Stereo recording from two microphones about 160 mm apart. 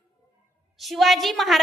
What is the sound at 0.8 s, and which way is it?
Speech, centre (ahead or behind).